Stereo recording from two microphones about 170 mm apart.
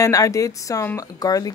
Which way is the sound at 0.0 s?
20° left (ahead or behind).